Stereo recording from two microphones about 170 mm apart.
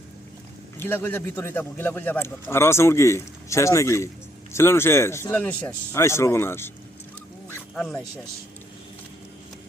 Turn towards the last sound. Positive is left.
turn(degrees=5)  # may be behind; listen again after turning